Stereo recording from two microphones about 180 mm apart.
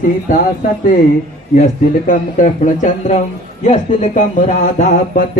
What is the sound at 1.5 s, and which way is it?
Speech, 45° left (ahead or behind).